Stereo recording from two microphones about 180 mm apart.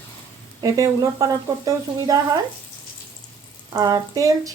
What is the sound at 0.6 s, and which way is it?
Speech, 20° right (ahead or behind).